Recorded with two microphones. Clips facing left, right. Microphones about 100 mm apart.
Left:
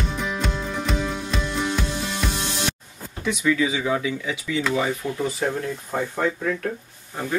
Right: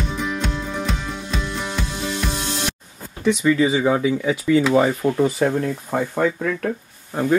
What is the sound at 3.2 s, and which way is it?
Speech, 15° right (ahead or behind).